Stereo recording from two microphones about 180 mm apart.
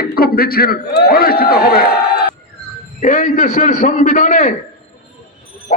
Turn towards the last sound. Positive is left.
turn(degrees=45)  # may be behind; listen again after turning